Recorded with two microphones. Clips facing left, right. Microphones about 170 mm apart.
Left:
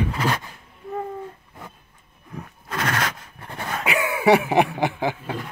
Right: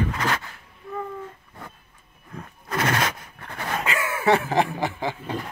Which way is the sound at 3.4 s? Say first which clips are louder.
Right 1 dB; 15° left (ahead or behind).